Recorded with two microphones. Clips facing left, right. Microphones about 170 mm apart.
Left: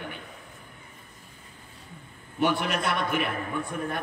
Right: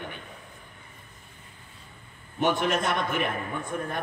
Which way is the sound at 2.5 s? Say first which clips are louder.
Right 2 dB; 45° right (ahead or behind).